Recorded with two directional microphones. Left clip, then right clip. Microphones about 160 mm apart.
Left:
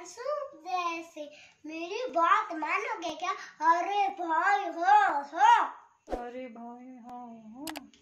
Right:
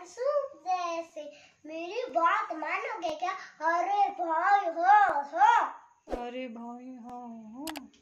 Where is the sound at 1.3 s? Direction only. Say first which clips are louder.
Right 1 dB; 10° right (ahead or behind).